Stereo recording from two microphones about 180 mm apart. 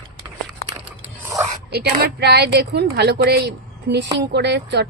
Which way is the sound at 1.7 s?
60° right (ahead or behind).